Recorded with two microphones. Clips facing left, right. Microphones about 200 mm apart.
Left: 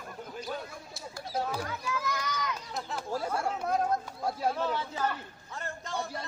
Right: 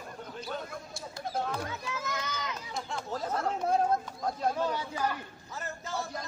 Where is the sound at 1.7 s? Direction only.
25° right (ahead or behind).